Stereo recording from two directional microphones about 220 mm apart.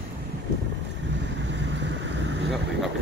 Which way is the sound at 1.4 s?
55° right (ahead or behind).